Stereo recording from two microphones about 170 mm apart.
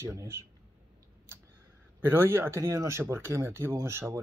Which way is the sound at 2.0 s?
15° right (ahead or behind).